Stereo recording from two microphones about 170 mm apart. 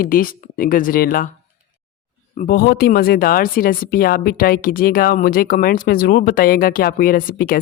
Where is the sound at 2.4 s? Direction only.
60° left (ahead or behind).